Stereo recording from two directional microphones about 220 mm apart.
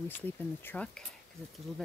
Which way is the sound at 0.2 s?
10° left (ahead or behind).